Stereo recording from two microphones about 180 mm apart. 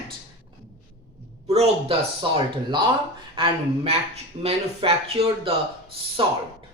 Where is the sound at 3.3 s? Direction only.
30° right (ahead or behind).